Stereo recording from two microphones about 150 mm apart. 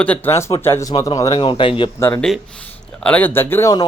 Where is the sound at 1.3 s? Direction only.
35° left (ahead or behind).